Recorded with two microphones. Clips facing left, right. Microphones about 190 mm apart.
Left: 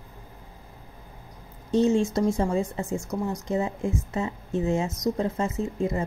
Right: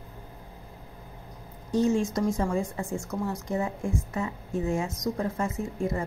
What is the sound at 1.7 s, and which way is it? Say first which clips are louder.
A woman's voice: left 3 dB; 25° left (ahead or behind).